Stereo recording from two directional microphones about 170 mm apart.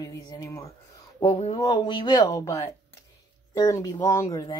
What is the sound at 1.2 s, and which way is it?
Speech, 35° left (ahead or behind).